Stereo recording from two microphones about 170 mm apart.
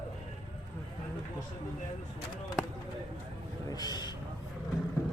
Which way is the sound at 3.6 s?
25° left (ahead or behind).